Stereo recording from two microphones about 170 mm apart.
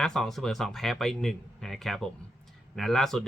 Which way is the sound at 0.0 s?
Centre (ahead or behind).